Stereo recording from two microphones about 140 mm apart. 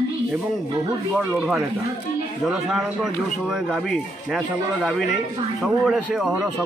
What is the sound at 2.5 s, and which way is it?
Speech, centre (ahead or behind).